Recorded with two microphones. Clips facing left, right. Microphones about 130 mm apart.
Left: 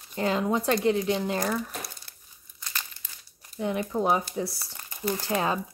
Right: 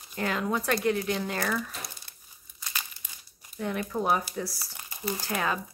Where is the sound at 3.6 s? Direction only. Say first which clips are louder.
Left 3 dB; 20° left (ahead or behind).